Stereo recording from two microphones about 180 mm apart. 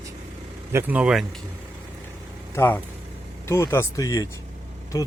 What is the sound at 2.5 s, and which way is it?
Speech, 15° left (ahead or behind).